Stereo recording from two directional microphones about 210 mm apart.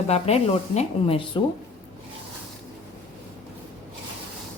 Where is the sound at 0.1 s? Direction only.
30° left (ahead or behind).